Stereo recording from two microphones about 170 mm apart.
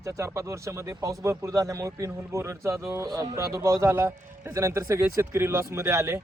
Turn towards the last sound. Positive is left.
turn(degrees=-15)  # may be behind; listen again after turning